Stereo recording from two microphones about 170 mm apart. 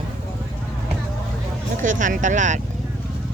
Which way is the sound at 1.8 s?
50° right (ahead or behind).